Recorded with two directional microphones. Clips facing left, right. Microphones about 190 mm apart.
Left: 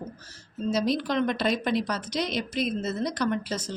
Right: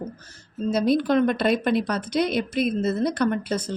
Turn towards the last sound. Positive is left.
turn(degrees=-55)  # may be behind; listen again after turning